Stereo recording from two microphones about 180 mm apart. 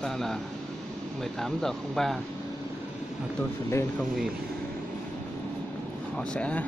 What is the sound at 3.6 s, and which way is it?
Speech, 15° left (ahead or behind).